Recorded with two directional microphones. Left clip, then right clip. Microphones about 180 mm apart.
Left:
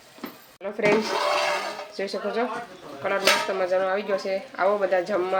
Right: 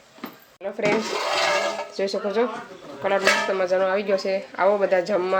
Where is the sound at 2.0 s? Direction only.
20° right (ahead or behind).